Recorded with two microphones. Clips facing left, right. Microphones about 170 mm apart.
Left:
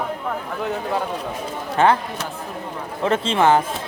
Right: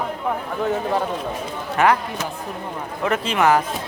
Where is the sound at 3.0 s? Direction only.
30° left (ahead or behind).